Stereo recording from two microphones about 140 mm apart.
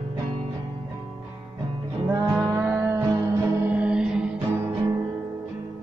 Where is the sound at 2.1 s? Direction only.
25° right (ahead or behind); by 4.3 s 5° right (ahead or behind).